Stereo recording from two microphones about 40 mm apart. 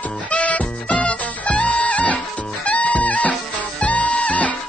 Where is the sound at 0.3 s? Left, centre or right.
Left.